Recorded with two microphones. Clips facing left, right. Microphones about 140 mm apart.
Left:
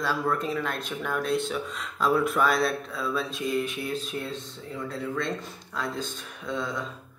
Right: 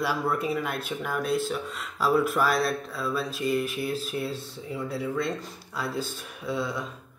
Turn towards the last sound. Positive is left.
turn(degrees=-10)  # may be behind; listen again after turning